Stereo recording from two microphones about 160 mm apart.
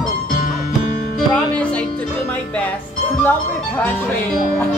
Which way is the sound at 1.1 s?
5° left (ahead or behind).